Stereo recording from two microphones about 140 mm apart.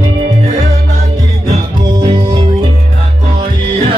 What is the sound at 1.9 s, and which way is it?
Music, 35° right (ahead or behind).